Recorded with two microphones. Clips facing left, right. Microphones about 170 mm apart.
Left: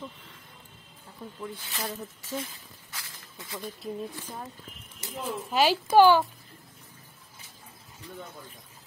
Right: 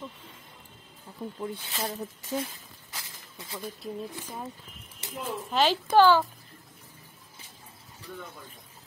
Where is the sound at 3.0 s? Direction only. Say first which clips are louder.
Even; 25° right (ahead or behind).